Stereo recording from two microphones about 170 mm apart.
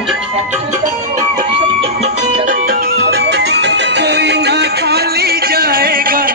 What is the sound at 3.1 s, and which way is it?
Music, 85° right.